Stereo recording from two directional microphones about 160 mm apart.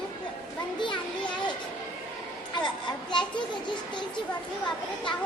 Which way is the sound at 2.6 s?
30° left (ahead or behind).